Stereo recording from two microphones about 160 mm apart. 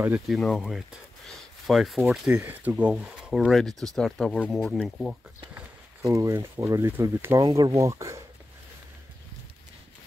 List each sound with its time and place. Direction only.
0.3 s speech: centre (ahead or behind)
6.0 s speech: 20° right (ahead or behind)